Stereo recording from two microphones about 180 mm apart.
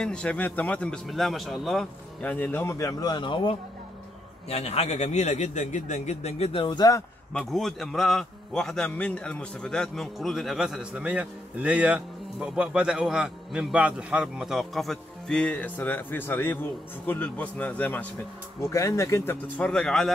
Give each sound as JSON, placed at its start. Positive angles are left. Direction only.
{"t": 0.0, "sound": "a man's voice", "side_deg": 5}
{"t": 7.3, "sound": "a man's voice", "side_deg": 0}